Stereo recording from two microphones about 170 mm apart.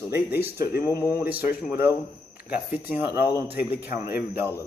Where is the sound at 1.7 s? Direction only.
15° right (ahead or behind).